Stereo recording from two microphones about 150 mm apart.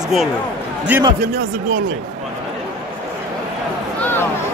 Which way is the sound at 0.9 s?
10° right (ahead or behind).